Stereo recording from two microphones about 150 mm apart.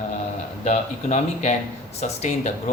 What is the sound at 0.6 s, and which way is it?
Speech, 50° left (ahead or behind).